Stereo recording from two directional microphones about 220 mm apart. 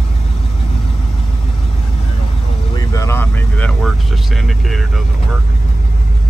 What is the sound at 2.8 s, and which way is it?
Vehicle, 15° left (ahead or behind).